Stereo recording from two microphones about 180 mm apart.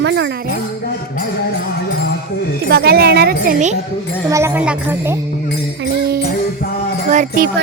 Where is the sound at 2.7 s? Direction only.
60° right (ahead or behind).